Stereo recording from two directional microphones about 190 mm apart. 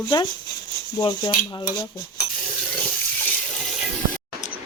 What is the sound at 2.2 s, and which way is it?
Stir, 60° left (ahead or behind).